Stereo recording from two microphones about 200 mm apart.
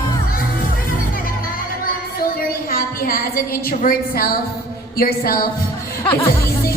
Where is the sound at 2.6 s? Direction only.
45° left (ahead or behind).